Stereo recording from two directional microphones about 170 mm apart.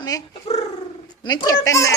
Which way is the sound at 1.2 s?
25° left (ahead or behind).